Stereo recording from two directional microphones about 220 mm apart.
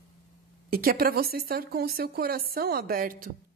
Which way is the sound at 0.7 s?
40° right (ahead or behind).